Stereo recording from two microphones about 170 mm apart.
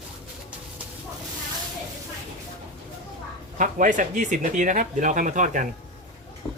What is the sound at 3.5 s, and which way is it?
Speech, 50° right (ahead or behind).